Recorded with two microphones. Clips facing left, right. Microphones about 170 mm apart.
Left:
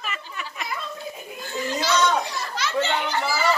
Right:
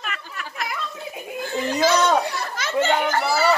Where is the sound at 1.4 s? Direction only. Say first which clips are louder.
Right 6 dB; 55° right (ahead or behind).